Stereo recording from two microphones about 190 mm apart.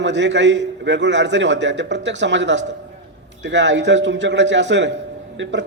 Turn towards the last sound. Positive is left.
turn(degrees=-70)  # may be behind; listen again after turning